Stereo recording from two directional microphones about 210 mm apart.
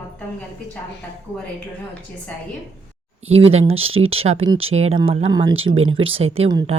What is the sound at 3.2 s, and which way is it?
Speech, 30° right (ahead or behind).